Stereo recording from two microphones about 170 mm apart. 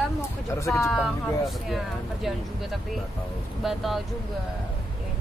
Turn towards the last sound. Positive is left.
turn(degrees=0)  # may be behind; listen again after turning